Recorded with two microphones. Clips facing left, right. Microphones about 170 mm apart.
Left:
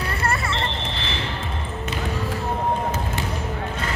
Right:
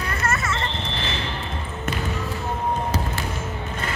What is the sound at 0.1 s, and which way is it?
Smoke detector, 30° left (ahead or behind).